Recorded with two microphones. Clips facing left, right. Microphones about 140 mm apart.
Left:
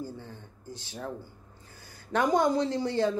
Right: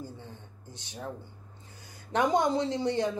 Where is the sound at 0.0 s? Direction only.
20° right (ahead or behind).